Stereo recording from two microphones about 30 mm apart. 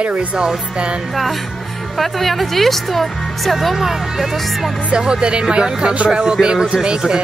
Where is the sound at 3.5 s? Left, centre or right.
Centre.